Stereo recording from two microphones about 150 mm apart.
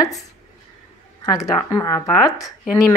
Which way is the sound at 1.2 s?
25° left (ahead or behind).